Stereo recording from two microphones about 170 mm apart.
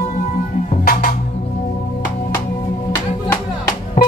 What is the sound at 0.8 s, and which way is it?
Music, 60° left (ahead or behind).